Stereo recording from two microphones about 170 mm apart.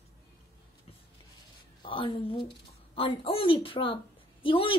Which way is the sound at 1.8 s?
30° left (ahead or behind).